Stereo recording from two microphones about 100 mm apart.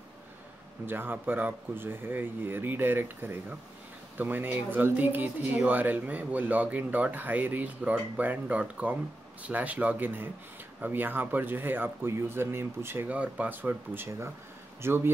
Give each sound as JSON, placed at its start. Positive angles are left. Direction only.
{"t": 0.8, "sound": "speech", "side_deg": -20}